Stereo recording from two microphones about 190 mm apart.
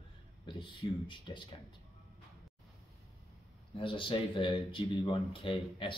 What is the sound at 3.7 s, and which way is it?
Speech, 25° left (ahead or behind).